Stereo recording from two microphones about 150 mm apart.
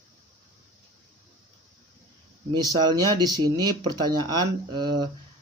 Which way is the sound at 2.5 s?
25° right (ahead or behind).